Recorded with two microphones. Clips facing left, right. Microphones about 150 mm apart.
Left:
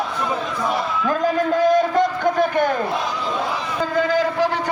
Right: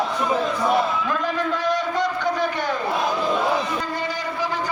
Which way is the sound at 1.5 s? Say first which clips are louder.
Left 10 dB; 45° left (ahead or behind).